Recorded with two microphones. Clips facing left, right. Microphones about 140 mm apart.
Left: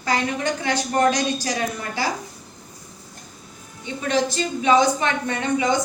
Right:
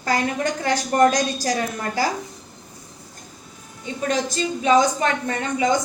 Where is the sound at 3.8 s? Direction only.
40° right (ahead or behind).